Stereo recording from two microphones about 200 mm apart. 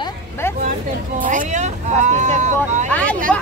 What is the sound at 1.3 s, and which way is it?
Speech, 40° right (ahead or behind).